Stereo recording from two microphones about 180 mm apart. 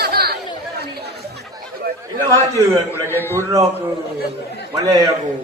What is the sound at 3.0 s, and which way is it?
Speech, 10° left (ahead or behind).